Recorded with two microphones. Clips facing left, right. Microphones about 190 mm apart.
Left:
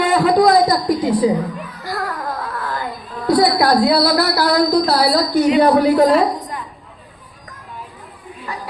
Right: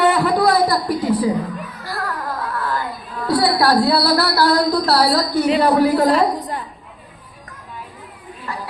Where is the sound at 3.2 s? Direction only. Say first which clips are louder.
Left 2 dB; 20° left (ahead or behind).